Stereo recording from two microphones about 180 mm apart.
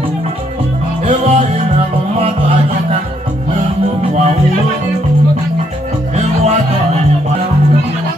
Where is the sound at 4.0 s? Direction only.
35° right (ahead or behind).